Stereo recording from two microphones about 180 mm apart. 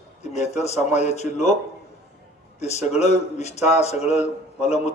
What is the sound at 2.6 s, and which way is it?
A man's voice, 35° left (ahead or behind).